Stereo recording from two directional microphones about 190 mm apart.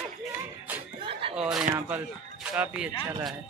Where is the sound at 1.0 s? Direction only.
30° right (ahead or behind).